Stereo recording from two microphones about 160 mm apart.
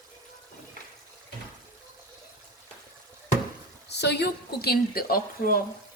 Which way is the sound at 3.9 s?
90° left.